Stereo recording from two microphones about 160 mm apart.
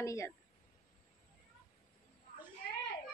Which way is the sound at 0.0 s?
20° left (ahead or behind).